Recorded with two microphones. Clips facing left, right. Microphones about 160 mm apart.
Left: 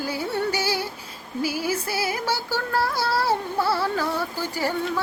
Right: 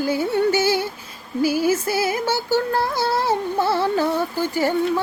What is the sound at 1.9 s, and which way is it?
Female singing, 25° right (ahead or behind).